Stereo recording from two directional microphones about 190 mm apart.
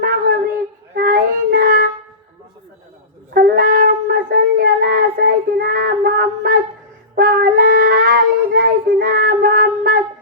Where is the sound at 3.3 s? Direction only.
45° right (ahead or behind).